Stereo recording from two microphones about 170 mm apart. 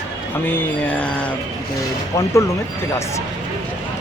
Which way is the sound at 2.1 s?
20° left (ahead or behind).